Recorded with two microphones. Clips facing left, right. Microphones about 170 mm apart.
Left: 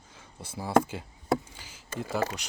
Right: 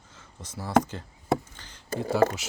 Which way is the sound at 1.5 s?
10° left (ahead or behind).